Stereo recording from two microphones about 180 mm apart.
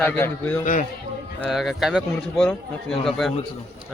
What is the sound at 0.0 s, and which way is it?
Speech, 10° left (ahead or behind).